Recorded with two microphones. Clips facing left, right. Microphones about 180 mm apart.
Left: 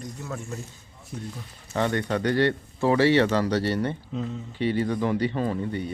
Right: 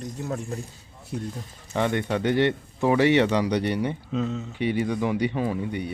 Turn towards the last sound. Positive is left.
turn(degrees=-10)  # may be behind; listen again after turning